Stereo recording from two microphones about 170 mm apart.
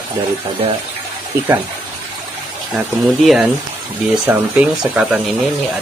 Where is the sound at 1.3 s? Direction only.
15° right (ahead or behind).